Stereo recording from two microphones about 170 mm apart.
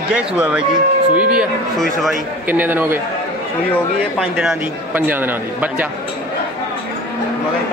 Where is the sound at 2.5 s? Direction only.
10° right (ahead or behind).